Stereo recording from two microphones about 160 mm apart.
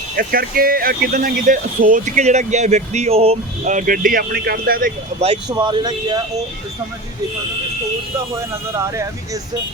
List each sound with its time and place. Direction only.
0.2 s speech: 65° right (ahead or behind)
5.5 s speech: 30° right (ahead or behind)
8.4 s speech: 20° right (ahead or behind)